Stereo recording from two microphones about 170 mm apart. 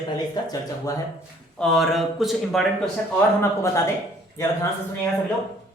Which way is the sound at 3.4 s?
15° left (ahead or behind).